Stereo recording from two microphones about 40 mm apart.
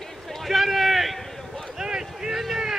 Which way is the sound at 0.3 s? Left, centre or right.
Centre.